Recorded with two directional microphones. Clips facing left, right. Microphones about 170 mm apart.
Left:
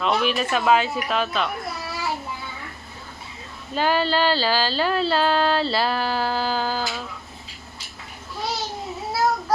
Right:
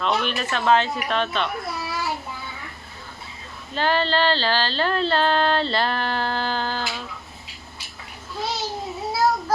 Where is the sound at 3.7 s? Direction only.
10° left (ahead or behind).